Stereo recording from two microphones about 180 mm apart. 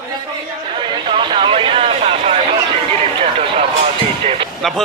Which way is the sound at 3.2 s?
30° right (ahead or behind).